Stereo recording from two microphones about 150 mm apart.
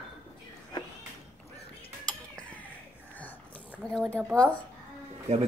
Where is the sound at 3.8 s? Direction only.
5° left (ahead or behind).